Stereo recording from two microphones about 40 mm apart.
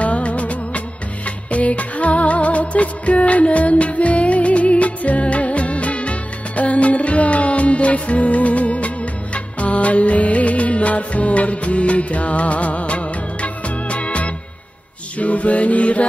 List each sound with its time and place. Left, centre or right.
0.0 s music: left